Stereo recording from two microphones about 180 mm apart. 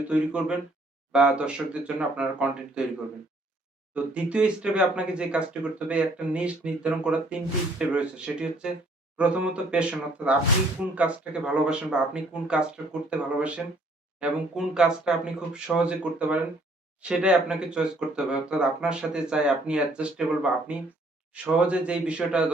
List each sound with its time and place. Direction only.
0.1 s speech: 5° right (ahead or behind)
3.9 s speech: 5° right (ahead or behind)